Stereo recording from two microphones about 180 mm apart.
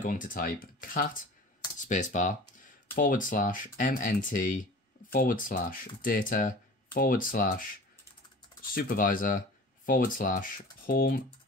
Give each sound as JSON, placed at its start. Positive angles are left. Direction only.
{"t": 0.0, "sound": "speech", "side_deg": 50}
{"t": 8.7, "sound": "speech", "side_deg": 50}